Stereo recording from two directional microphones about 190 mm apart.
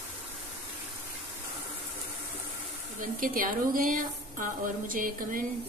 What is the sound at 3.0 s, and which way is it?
A woman's voice, 45° right (ahead or behind).